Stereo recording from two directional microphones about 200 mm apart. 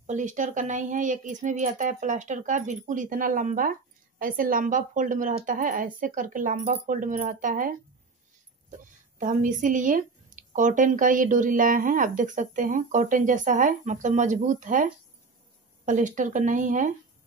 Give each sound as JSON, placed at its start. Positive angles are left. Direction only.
{"t": 0.0, "sound": "a woman's voice", "side_deg": -40}